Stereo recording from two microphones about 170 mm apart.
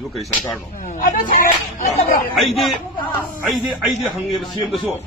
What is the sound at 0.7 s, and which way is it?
Speech, 50° left (ahead or behind).